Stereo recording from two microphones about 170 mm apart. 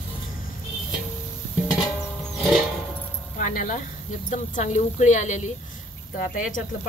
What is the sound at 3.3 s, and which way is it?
Speech, 55° left (ahead or behind).